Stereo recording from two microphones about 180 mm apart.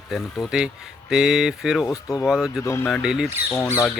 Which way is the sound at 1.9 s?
15° left (ahead or behind).